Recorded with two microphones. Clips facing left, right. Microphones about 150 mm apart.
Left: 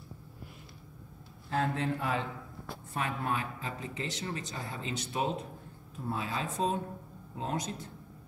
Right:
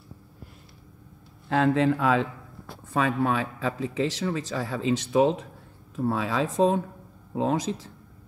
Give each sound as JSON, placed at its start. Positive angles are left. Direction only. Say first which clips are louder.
{"t": 1.5, "sound": "speech", "louder": "right 10 dB", "side_deg": -90}